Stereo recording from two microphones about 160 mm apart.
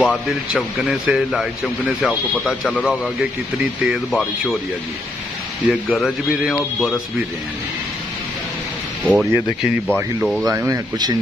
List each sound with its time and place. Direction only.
0.0 s a man's voice: centre (ahead or behind)
5.7 s a man's voice: centre (ahead or behind)
9.0 s a man's voice: 5° right (ahead or behind)
10.4 s speech: 20° right (ahead or behind)